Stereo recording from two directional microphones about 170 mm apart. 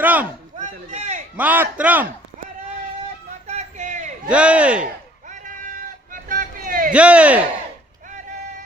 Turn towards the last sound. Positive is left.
turn(degrees=-5)  # may be behind; listen again after turning